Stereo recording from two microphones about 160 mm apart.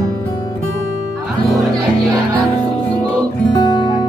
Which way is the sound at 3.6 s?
30° left (ahead or behind).